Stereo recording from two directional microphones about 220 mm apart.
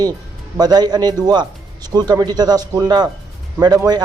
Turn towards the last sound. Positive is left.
turn(degrees=-20)  # may be behind; listen again after turning